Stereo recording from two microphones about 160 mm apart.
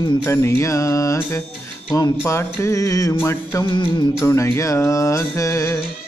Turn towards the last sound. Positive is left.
turn(degrees=20)  # may be behind; listen again after turning